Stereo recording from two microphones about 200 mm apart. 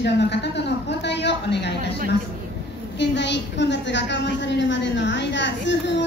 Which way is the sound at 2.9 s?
60° left (ahead or behind).